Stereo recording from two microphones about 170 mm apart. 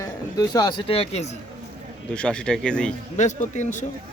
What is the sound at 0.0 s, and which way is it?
Speech, 20° left (ahead or behind).